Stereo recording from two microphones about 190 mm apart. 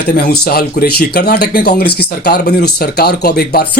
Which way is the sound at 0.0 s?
55° left (ahead or behind).